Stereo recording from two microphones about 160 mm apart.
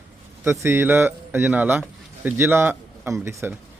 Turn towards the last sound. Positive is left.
turn(degrees=-15)  # may be behind; listen again after turning